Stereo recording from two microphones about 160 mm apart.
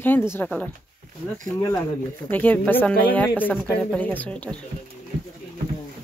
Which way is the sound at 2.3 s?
10° left (ahead or behind).